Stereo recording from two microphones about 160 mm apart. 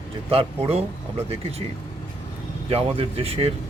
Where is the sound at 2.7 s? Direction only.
40° right (ahead or behind).